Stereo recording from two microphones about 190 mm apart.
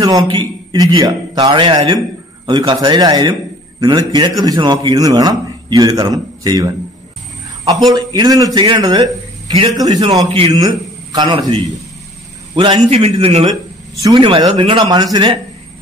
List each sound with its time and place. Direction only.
0.0 s a man's voice: 20° right (ahead or behind)
7.9 s a man's voice: 20° right (ahead or behind)